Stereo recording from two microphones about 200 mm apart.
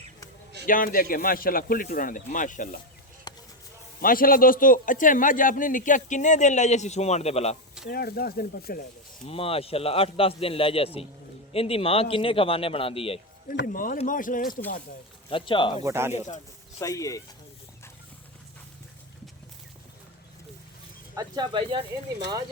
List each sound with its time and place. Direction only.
0.6 s speech: 45° left (ahead or behind)
3.3 s a sound: 20° left (ahead or behind)
4.0 s a man's voice: 45° left (ahead or behind)
7.9 s speech: 50° left (ahead or behind)
9.2 s a man's voice: 30° left (ahead or behind)
13.6 s a man's voice: 45° left (ahead or behind)
15.3 s a man's voice: 25° left (ahead or behind)
15.8 s speech: 15° right (ahead or behind)
16.1 s speech: 35° left (ahead or behind)
16.8 s speech: 15° left (ahead or behind)
21.2 s speech: 20° right (ahead or behind)